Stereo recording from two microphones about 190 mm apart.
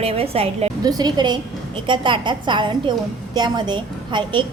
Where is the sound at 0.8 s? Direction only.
20° right (ahead or behind).